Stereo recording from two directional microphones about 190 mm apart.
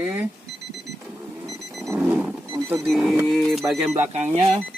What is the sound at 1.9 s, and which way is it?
Roaring cats, 10° right (ahead or behind).